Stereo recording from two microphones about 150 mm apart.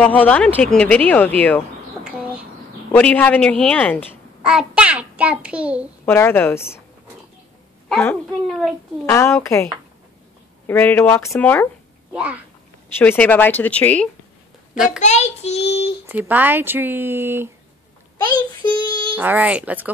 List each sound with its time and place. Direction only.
0.0 s a woman's voice: 10° left (ahead or behind)
2.0 s a sound: 5° right (ahead or behind)
2.9 s a woman's voice: 10° left (ahead or behind)
4.4 s child singing: 5° right (ahead or behind)
6.0 s a woman's voice: 15° left (ahead or behind)
7.9 s a woman's voice: 10° left (ahead or behind)
9.0 s a woman's voice: 15° left (ahead or behind)
10.7 s a woman's voice: 10° left (ahead or behind)
12.1 s a child's voice: 10° right (ahead or behind)
12.9 s a woman's voice: 10° left (ahead or behind)
14.9 s a child's voice: 50° left (ahead or behind)
16.1 s child singing: 10° right (ahead or behind)
18.1 s a child's voice: 30° left (ahead or behind)
19.1 s child singing: 10° right (ahead or behind)